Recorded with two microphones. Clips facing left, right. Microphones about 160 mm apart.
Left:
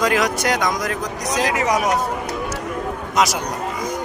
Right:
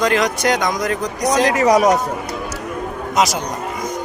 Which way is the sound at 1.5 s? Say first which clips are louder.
Right 7 dB; 40° right (ahead or behind).